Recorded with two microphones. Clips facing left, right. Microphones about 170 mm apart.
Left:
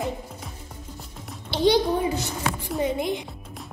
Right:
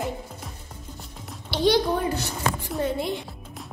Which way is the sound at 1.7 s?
15° left (ahead or behind).